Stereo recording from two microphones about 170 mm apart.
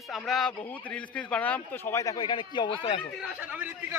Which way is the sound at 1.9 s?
20° left (ahead or behind).